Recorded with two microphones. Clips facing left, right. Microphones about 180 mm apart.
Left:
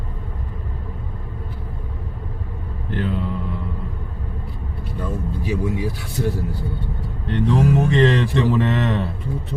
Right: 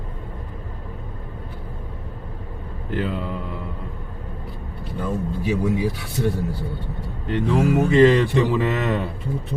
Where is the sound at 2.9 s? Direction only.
5° right (ahead or behind).